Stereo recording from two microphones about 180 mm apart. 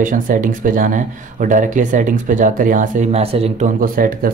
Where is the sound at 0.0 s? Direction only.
50° right (ahead or behind).